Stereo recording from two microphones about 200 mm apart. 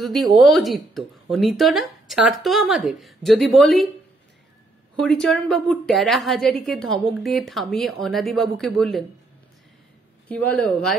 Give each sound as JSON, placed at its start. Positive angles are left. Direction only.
{"t": 0.0, "sound": "a woman's voice", "side_deg": 0}
{"t": 5.0, "sound": "a woman's voice", "side_deg": 0}
{"t": 10.2, "sound": "a woman's voice", "side_deg": 5}